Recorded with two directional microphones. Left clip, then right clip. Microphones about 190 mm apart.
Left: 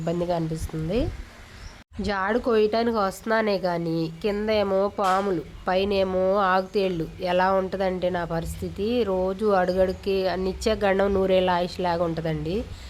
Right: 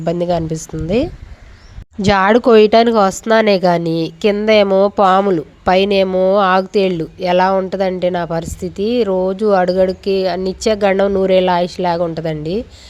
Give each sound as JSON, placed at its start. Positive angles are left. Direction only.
{"t": 0.0, "sound": "speech", "side_deg": -35}